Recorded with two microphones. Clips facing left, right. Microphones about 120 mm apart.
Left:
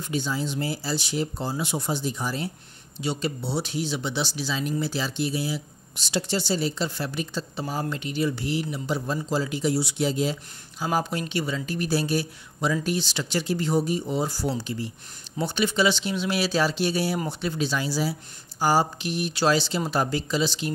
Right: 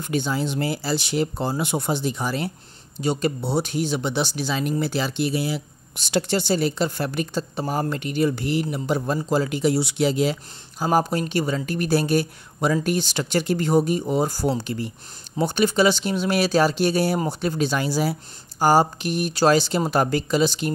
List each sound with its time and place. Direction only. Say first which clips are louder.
0.0 s speech: right 4 dB; 60° right (ahead or behind)
3.0 s speech: right 5 dB; 50° right (ahead or behind); by 10.3 s 75° right (ahead or behind)
10.8 s speech: right 5 dB; 45° right (ahead or behind)
15.3 s speech: right 5 dB; 45° right (ahead or behind)